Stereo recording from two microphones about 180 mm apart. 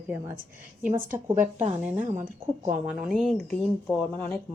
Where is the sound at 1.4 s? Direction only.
40° right (ahead or behind).